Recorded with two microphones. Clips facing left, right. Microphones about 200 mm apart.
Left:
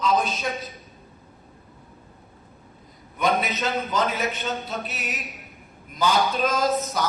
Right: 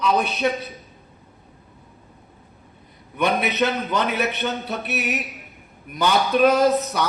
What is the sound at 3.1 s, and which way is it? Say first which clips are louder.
A man's voice: right 2 dB; 65° right (ahead or behind).